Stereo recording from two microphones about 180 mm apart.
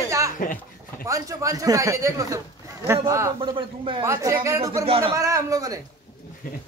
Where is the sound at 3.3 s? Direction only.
30° right (ahead or behind).